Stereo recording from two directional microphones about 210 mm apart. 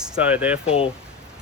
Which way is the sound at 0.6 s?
25° left (ahead or behind).